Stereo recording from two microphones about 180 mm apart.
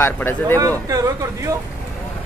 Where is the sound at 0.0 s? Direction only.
10° left (ahead or behind).